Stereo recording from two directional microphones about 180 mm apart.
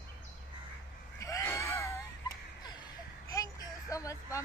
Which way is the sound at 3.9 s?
20° left (ahead or behind).